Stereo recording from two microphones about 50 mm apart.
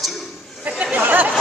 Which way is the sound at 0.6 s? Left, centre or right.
Right.